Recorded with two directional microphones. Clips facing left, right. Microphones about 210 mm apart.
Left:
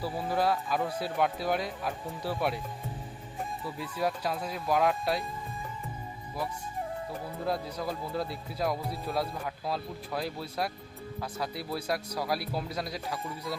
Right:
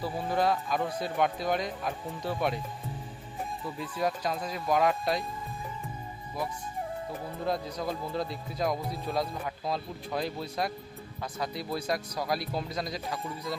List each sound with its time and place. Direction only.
0.0 s speech: 5° left (ahead or behind)
3.8 s speech: 5° left (ahead or behind)
7.4 s speech: 5° left (ahead or behind)